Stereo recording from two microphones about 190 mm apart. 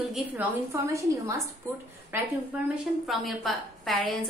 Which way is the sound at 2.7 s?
Centre (ahead or behind).